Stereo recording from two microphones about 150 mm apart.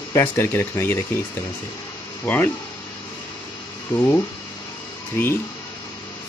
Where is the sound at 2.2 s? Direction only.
10° left (ahead or behind).